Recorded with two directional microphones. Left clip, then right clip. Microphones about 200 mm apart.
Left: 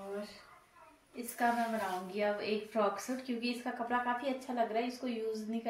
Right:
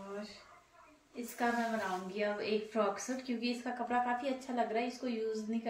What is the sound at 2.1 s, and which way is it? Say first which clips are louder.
A woman's voice: left 1 dB; centre (ahead or behind).